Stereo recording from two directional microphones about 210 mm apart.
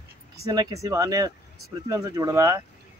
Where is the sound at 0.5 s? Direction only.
20° right (ahead or behind).